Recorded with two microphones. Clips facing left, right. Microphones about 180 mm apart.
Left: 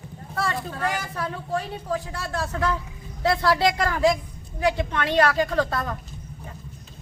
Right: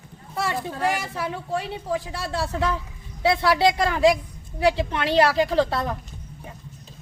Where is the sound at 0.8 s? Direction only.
25° right (ahead or behind).